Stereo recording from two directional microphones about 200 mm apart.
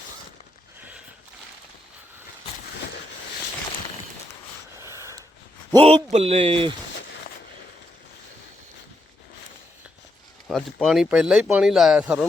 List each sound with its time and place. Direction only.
0.8 s a sound: 5° right (ahead or behind)
4.8 s snort: 15° right (ahead or behind)
5.7 s a man's voice: 30° right (ahead or behind)
10.5 s speech: centre (ahead or behind)